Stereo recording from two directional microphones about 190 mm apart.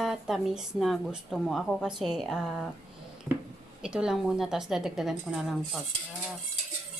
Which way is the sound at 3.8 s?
5° right (ahead or behind).